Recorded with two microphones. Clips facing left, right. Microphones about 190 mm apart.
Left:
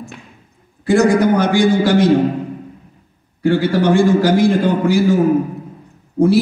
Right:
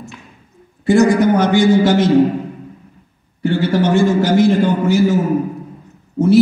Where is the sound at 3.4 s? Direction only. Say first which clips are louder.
Left 1 dB; 25° right (ahead or behind).